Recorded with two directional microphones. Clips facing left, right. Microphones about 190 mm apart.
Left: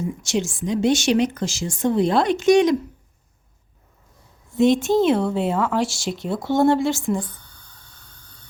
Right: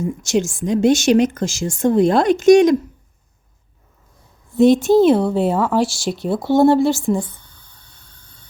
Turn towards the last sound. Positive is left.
turn(degrees=-35)  # may be behind; listen again after turning